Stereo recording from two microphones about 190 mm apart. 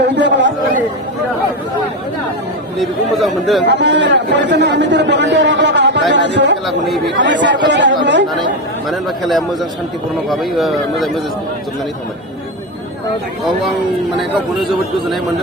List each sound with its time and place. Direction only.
0.0 s speech: 65° right (ahead or behind)
2.7 s speech: centre (ahead or behind)
3.7 s a man's voice: 65° right (ahead or behind)
6.7 s speech: centre (ahead or behind)
7.2 s a man's voice: 65° right (ahead or behind)
8.9 s speech: centre (ahead or behind)
14.2 s speech: centre (ahead or behind)